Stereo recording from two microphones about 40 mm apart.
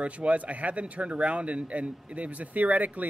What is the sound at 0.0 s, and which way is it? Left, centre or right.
Speech, right.